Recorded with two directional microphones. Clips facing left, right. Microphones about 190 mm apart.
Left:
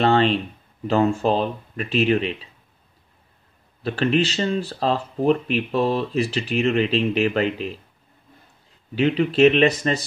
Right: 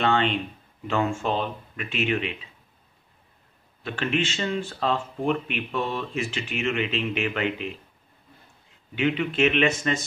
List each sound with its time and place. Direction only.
0.0 s speech: 35° left (ahead or behind)
3.8 s speech: 35° left (ahead or behind)
8.9 s speech: 35° left (ahead or behind)